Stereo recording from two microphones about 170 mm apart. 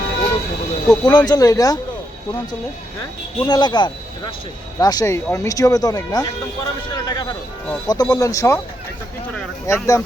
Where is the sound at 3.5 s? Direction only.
25° left (ahead or behind).